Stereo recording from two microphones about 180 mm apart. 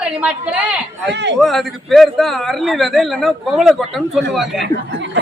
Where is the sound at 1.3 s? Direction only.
Centre (ahead or behind).